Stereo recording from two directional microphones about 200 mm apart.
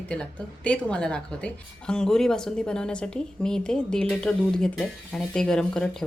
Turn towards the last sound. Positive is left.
turn(degrees=5)  # may be behind; listen again after turning